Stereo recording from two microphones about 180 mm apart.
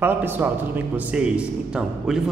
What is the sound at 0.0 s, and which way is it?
A man's voice, 10° right (ahead or behind).